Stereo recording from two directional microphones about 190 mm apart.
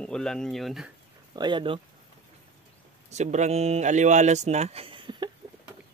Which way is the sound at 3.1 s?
35° right (ahead or behind).